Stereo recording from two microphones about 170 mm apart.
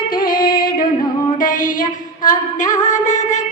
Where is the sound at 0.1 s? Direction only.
55° left (ahead or behind).